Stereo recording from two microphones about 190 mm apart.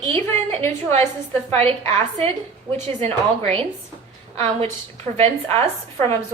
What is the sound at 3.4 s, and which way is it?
A woman's voice, 30° right (ahead or behind).